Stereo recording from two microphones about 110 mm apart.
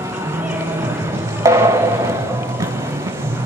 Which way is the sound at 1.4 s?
25° right (ahead or behind).